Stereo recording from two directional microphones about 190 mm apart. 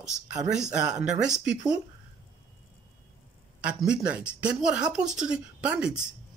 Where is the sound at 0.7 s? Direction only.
5° right (ahead or behind).